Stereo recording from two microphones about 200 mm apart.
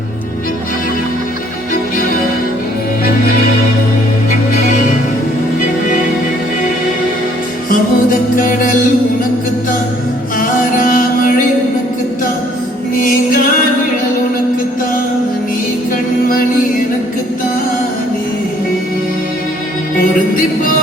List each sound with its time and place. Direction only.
7.7 s music: 45° left (ahead or behind)
10.3 s music: 45° left (ahead or behind)
13.0 s music: 45° left (ahead or behind)